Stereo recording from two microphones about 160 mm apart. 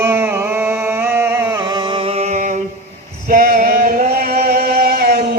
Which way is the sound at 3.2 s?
55° right (ahead or behind).